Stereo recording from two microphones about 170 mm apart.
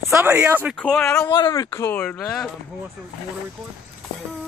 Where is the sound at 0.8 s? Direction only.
5° left (ahead or behind).